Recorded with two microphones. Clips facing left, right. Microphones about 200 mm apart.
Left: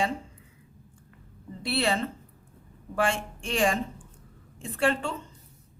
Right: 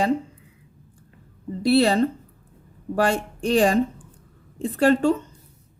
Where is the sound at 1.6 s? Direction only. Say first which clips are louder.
Right 10 dB; 40° right (ahead or behind).